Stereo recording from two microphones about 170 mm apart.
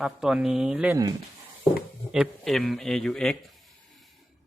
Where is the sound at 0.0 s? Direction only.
5° right (ahead or behind).